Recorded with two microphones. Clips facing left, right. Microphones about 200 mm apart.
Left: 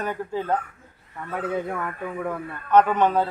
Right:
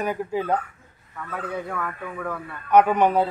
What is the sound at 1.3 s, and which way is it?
Speech, 20° left (ahead or behind).